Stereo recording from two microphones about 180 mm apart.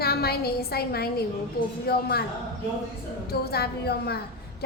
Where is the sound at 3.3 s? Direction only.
60° left (ahead or behind).